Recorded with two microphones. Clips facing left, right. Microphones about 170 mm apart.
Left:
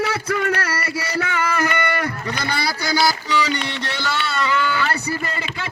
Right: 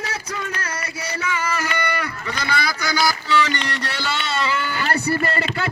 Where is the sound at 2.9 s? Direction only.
25° left (ahead or behind).